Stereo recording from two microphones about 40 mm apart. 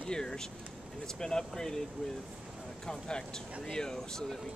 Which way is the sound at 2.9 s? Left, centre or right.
Centre.